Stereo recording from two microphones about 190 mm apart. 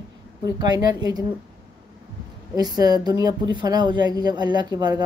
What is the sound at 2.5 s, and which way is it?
Speech, 20° right (ahead or behind).